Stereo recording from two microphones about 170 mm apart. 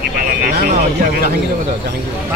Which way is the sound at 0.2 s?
60° right (ahead or behind).